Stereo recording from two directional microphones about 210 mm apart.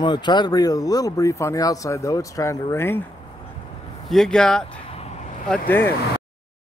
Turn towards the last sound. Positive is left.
turn(degrees=10)  # may be behind; listen again after turning